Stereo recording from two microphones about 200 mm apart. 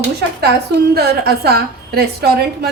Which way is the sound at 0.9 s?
55° right (ahead or behind).